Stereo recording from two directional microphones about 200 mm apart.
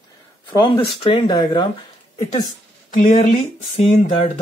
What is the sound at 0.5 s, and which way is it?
Speech, 20° left (ahead or behind).